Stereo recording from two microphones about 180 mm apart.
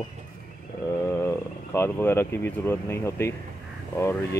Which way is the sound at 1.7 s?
15° left (ahead or behind).